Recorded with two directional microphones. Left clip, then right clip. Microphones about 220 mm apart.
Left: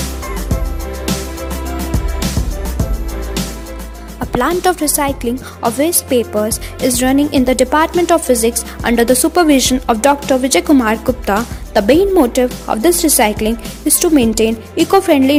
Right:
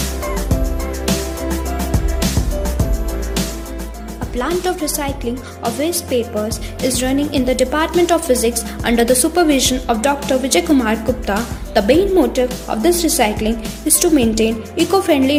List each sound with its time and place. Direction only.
0.3 s fowl: centre (ahead or behind)
1.9 s music: centre (ahead or behind)
4.4 s a woman's voice: 45° left (ahead or behind)